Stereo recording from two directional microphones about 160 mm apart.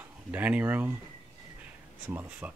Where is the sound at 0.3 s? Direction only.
10° right (ahead or behind).